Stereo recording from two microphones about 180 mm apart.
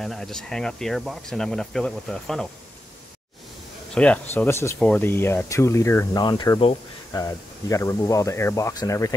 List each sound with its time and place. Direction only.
0.0 s speech: centre (ahead or behind)
3.9 s speech: 5° left (ahead or behind)